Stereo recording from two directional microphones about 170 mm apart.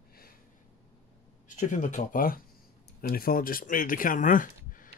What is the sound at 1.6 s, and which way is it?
Speech, 50° left (ahead or behind).